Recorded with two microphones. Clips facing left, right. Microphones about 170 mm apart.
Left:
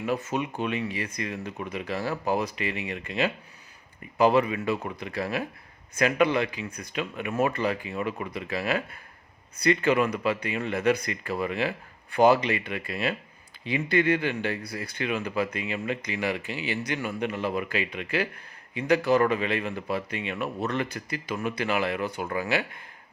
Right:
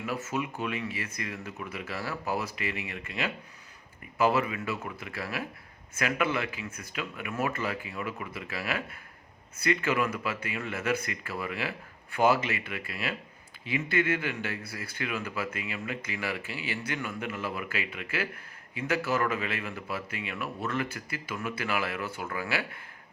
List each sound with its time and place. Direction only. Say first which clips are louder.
0.0 s speech: left 4 dB; 30° left (ahead or behind)